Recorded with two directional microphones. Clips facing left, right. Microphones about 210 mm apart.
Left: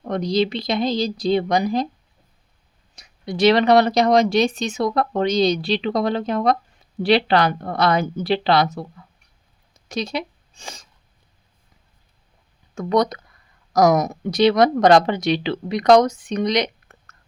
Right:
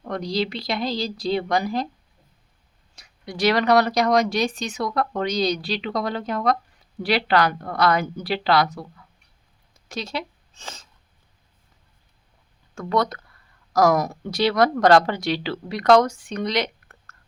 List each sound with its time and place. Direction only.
0.0 s speech: 20° left (ahead or behind)
2.9 s speech: 20° left (ahead or behind)
9.7 s a sound: 15° left (ahead or behind)
12.7 s speech: 20° left (ahead or behind)